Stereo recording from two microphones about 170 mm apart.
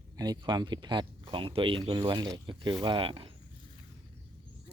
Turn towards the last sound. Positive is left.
turn(degrees=-30)  # may be behind; listen again after turning